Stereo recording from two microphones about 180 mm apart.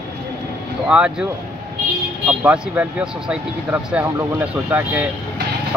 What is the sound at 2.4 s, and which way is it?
Speech, 5° right (ahead or behind).